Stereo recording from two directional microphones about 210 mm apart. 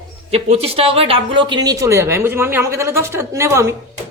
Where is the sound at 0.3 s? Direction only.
30° right (ahead or behind).